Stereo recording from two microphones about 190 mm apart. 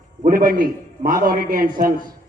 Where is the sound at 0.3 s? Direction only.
45° right (ahead or behind).